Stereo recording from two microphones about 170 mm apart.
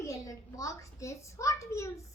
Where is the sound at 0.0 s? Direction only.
20° left (ahead or behind).